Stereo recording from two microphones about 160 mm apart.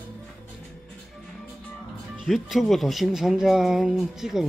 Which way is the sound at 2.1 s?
Centre (ahead or behind).